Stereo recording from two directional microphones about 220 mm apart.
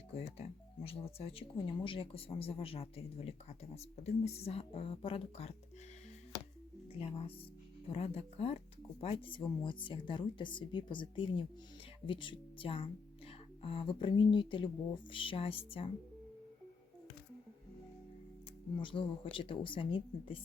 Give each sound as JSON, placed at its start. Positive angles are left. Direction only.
{"t": 0.9, "sound": "speech", "side_deg": 25}
{"t": 6.9, "sound": "speech", "side_deg": 25}
{"t": 18.8, "sound": "speech", "side_deg": 25}